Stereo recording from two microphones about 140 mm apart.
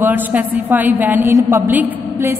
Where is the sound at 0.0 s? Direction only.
10° right (ahead or behind).